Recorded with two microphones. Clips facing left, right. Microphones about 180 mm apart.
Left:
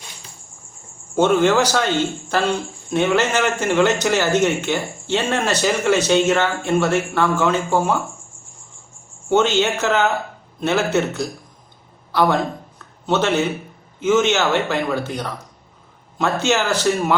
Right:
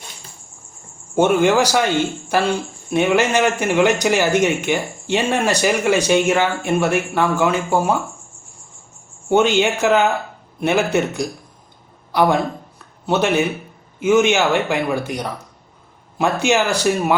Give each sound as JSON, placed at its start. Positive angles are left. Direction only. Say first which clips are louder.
{"t": 1.1, "sound": "speech", "louder": "right 1 dB", "side_deg": -15}
{"t": 9.3, "sound": "a man's voice", "louder": "right 2 dB", "side_deg": -15}